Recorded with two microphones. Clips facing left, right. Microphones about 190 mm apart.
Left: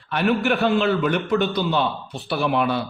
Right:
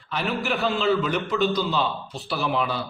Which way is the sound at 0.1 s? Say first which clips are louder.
Left 6 dB; 60° left (ahead or behind).